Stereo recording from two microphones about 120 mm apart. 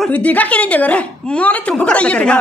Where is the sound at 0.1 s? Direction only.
10° left (ahead or behind).